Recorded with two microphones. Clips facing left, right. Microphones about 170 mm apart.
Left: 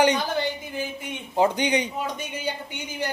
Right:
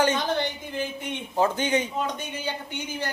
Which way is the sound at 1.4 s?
15° left (ahead or behind).